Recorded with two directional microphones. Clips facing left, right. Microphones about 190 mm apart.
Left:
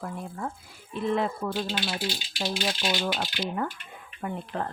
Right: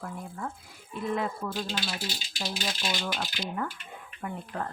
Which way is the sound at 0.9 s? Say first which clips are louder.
Left 4 dB; 25° left (ahead or behind).